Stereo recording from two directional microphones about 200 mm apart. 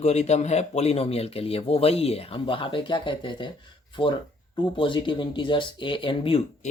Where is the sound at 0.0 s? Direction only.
35° left (ahead or behind).